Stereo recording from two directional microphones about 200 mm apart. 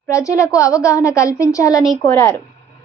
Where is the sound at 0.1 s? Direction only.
15° left (ahead or behind).